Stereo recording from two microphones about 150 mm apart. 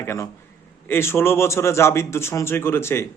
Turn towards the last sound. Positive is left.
turn(degrees=15)  # may be behind; listen again after turning